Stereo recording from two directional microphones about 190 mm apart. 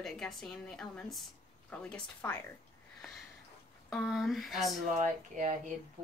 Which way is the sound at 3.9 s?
Centre (ahead or behind).